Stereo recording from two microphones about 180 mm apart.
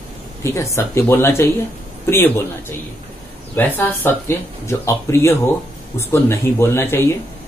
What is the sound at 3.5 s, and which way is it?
Speech, 10° left (ahead or behind).